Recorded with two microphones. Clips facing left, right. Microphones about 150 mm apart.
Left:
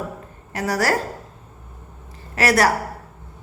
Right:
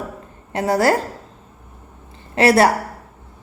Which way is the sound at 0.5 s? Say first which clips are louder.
Right 5 dB; 25° right (ahead or behind).